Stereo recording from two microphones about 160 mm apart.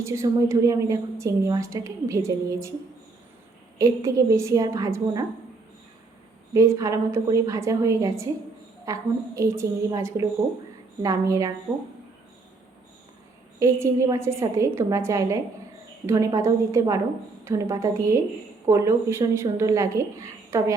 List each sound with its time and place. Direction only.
0.0 s a woman's voice: 20° right (ahead or behind)
3.8 s a woman's voice: 20° right (ahead or behind)
6.5 s a woman's voice: 20° right (ahead or behind)
13.6 s a woman's voice: 15° right (ahead or behind)